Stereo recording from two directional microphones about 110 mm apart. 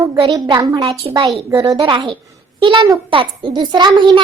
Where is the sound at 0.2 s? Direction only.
45° right (ahead or behind).